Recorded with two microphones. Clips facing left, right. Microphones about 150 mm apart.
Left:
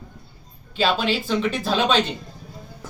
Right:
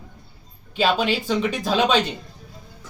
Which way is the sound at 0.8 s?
15° right (ahead or behind).